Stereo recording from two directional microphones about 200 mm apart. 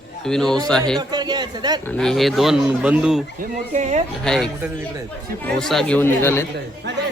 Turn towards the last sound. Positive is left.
turn(degrees=-60)  # may be behind; listen again after turning